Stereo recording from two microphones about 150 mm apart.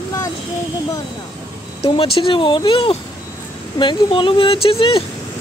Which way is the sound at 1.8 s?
40° left (ahead or behind).